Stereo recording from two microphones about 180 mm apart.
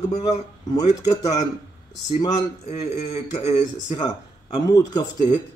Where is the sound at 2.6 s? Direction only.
40° left (ahead or behind).